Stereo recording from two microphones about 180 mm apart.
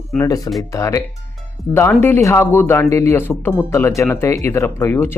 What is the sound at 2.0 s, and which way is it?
Speech, 15° left (ahead or behind).